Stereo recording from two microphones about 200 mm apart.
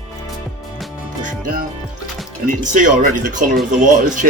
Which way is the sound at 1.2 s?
40° right (ahead or behind).